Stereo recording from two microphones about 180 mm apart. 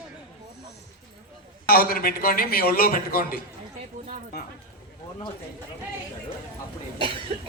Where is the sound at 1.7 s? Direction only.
55° left (ahead or behind).